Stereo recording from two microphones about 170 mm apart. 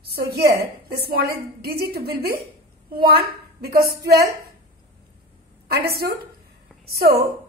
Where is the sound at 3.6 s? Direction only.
65° right (ahead or behind).